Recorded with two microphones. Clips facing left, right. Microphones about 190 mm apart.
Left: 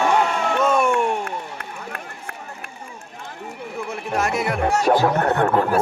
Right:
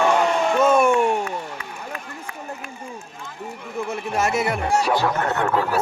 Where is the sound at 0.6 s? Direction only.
Centre (ahead or behind).